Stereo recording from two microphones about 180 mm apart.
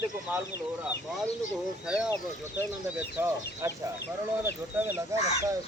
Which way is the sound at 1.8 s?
5° right (ahead or behind).